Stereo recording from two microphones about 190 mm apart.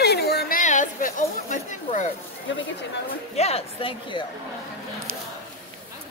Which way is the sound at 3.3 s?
35° left (ahead or behind).